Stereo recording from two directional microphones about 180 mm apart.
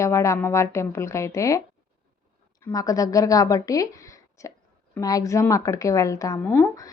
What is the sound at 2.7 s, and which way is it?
A woman's voice, 20° left (ahead or behind).